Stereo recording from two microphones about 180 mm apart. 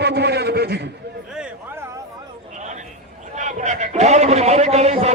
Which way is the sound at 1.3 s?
10° right (ahead or behind).